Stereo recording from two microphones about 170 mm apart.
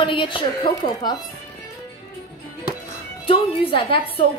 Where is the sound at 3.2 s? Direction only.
30° left (ahead or behind).